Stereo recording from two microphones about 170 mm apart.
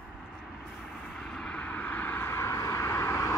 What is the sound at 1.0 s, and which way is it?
Vehicle, 5° left (ahead or behind).